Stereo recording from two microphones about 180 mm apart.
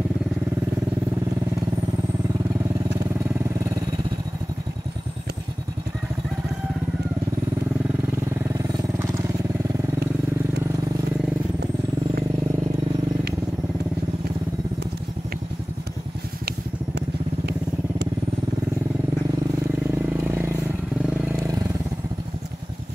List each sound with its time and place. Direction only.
8.5 s vehicle: 15° right (ahead or behind)
20.1 s vehicle: 15° right (ahead or behind)